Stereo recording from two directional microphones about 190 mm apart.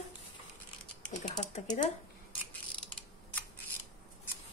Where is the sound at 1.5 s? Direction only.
45° left (ahead or behind).